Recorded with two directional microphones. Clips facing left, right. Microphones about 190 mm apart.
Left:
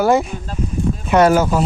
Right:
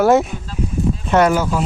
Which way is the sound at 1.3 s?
45° left (ahead or behind).